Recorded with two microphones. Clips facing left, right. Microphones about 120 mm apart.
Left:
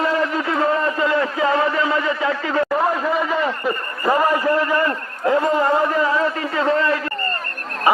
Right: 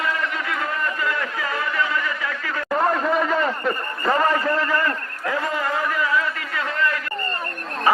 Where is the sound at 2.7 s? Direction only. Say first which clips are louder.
Right 4 dB; 5° left (ahead or behind); by 7.0 s 30° left (ahead or behind).